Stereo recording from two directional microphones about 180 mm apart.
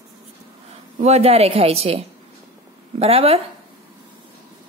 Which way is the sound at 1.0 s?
35° right (ahead or behind).